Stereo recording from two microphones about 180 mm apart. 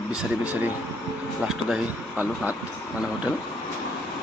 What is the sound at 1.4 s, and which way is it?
Speech, centre (ahead or behind).